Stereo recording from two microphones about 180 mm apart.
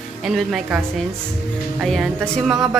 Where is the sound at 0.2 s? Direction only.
5° right (ahead or behind).